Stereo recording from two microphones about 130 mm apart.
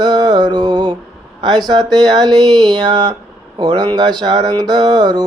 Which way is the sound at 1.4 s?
35° right (ahead or behind).